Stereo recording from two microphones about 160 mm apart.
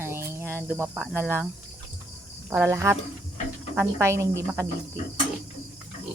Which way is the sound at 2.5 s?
15° right (ahead or behind).